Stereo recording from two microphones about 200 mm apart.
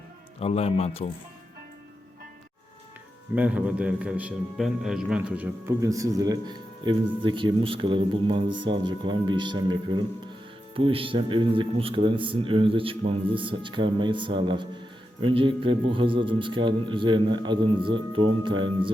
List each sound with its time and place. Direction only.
0.3 s speech: 30° left (ahead or behind)
3.3 s a man's voice: 5° right (ahead or behind); by 18.9 s 25° right (ahead or behind)